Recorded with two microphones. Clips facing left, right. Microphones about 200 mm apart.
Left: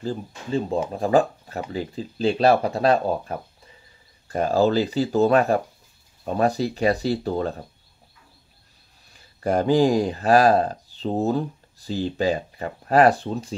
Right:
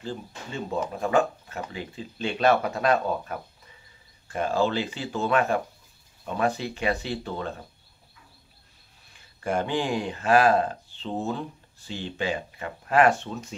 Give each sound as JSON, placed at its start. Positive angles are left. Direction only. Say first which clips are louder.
{"t": 0.0, "sound": "speech", "louder": "left 6 dB", "side_deg": 35}
{"t": 9.1, "sound": "speech", "louder": "left 5 dB", "side_deg": 35}